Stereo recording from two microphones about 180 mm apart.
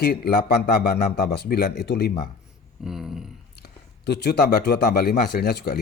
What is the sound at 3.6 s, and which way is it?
Speech, 65° left (ahead or behind).